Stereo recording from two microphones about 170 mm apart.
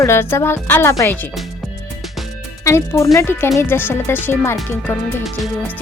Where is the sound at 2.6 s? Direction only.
15° left (ahead or behind).